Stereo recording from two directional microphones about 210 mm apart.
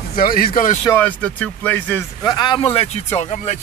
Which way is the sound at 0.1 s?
45° left (ahead or behind).